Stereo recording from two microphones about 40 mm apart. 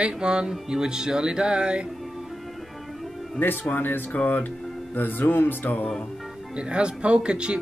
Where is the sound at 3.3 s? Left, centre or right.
Left.